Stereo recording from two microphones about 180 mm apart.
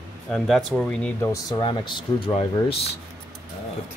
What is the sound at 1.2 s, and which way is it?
Speech, 20° left (ahead or behind).